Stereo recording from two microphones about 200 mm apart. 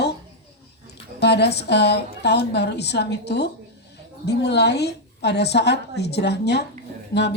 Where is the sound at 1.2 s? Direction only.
55° left (ahead or behind).